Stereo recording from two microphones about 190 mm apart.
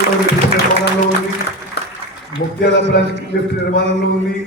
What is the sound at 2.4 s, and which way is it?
Speech, 70° left (ahead or behind).